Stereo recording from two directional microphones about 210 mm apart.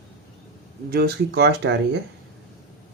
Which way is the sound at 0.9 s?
50° right (ahead or behind).